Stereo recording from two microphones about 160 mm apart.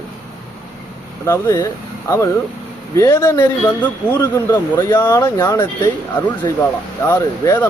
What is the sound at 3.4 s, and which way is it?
Speech, 10° left (ahead or behind).